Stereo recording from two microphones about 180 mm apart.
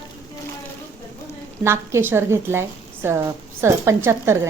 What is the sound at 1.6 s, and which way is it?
A woman's voice, 15° right (ahead or behind).